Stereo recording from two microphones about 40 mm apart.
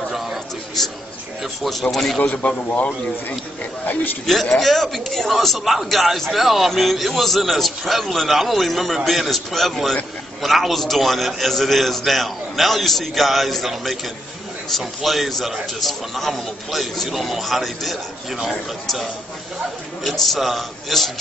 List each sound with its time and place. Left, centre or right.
0.1 s a sound: centre
1.4 s a man's voice: centre
2.1 s a man's voice: left
4.6 s a man's voice: centre
20.0 s a man's voice: centre